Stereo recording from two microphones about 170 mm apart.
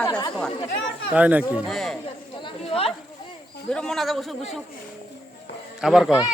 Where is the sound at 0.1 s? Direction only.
25° left (ahead or behind).